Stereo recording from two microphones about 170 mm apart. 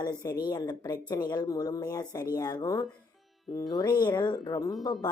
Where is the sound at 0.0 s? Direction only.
25° left (ahead or behind).